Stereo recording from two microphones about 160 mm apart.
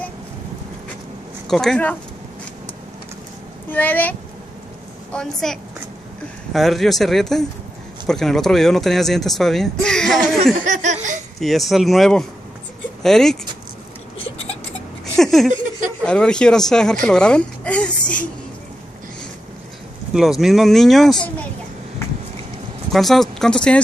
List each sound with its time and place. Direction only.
1.5 s speech: 5° left (ahead or behind)
3.7 s speech: 10° left (ahead or behind)
10.6 s laughter: 50° right (ahead or behind)
11.3 s speech: centre (ahead or behind)
15.1 s a sound: centre (ahead or behind)
16.1 s speech: 5° left (ahead or behind)
20.2 s speech: centre (ahead or behind)
22.8 s speech: centre (ahead or behind)